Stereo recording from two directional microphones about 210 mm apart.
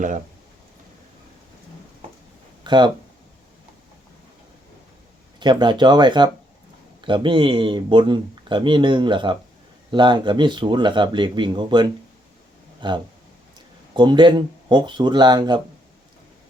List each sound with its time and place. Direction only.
2.6 s speech: 20° right (ahead or behind)
5.4 s speech: 20° right (ahead or behind)